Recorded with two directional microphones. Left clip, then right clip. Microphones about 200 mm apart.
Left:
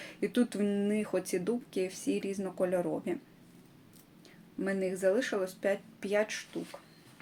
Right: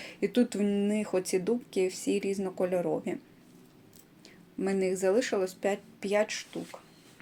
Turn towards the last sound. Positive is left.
turn(degrees=-20)  # may be behind; listen again after turning